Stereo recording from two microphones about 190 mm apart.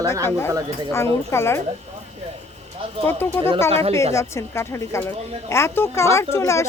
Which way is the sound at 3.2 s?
10° left (ahead or behind).